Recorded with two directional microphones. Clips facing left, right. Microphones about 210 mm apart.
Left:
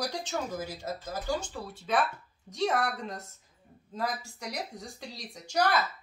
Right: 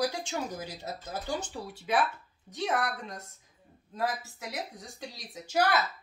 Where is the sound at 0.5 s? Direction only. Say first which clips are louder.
Left 3 dB; 15° right (ahead or behind).